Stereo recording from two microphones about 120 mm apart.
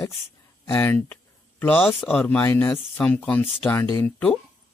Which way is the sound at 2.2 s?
20° left (ahead or behind).